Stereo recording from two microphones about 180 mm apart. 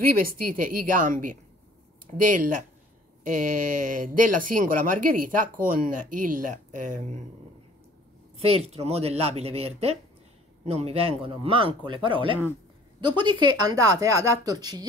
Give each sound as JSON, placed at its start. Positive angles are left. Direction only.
{"t": 0.2, "sound": "speech", "side_deg": -50}
{"t": 8.4, "sound": "speech", "side_deg": -35}